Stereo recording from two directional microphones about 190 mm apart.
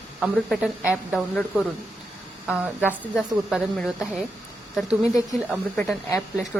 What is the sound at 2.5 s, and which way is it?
A woman's voice, 5° right (ahead or behind).